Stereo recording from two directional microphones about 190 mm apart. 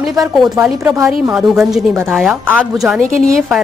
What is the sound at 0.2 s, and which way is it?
Speech, 15° right (ahead or behind).